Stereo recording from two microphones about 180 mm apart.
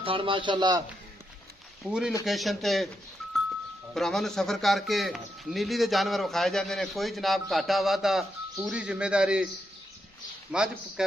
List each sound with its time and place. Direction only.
0.0 s speech: 30° right (ahead or behind)
1.9 s speech: 5° right (ahead or behind)
3.9 s speech: centre (ahead or behind)
10.5 s speech: 5° right (ahead or behind)